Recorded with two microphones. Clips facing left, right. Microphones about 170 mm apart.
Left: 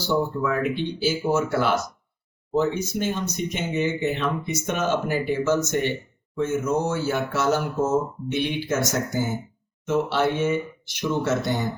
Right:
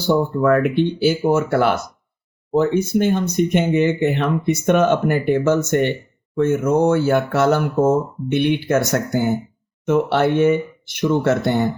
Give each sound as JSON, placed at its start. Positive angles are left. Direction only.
{"t": 0.0, "sound": "speech", "side_deg": -55}